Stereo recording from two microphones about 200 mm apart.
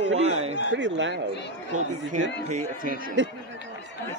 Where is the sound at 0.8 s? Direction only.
65° right (ahead or behind).